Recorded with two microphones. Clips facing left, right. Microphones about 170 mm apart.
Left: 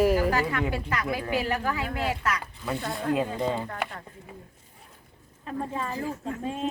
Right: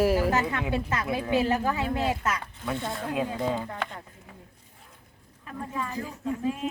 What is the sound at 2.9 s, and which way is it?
Speech, centre (ahead or behind).